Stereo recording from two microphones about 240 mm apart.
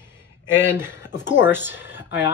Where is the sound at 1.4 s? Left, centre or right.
Centre.